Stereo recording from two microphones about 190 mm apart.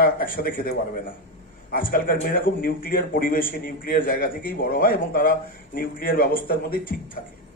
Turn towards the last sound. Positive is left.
turn(degrees=50)  # may be behind; listen again after turning